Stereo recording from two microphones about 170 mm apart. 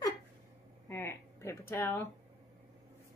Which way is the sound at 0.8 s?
15° left (ahead or behind).